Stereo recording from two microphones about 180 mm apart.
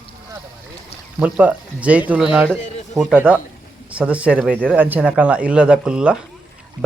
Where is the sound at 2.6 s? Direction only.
40° left (ahead or behind).